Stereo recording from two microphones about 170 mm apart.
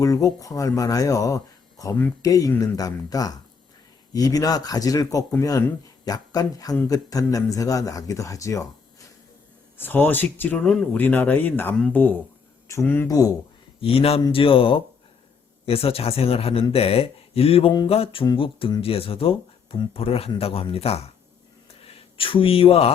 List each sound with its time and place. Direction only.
0.0 s a man's voice: 20° left (ahead or behind)
9.7 s speech: 10° left (ahead or behind)
13.8 s a man's voice: 35° left (ahead or behind)
22.2 s a man's voice: 30° left (ahead or behind)